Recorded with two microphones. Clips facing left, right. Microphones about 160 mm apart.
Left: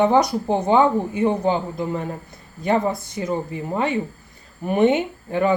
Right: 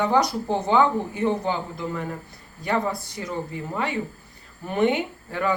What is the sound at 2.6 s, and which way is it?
Speech, 20° left (ahead or behind).